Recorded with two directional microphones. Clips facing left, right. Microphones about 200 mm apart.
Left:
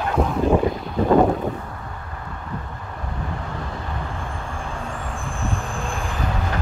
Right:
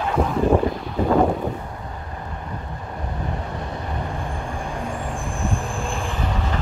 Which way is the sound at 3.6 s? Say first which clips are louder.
Right 2 dB; 20° right (ahead or behind).